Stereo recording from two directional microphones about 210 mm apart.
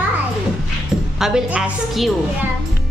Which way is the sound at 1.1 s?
Centre (ahead or behind).